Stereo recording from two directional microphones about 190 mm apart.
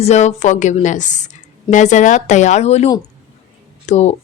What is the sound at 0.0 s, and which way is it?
Speech, 35° left (ahead or behind).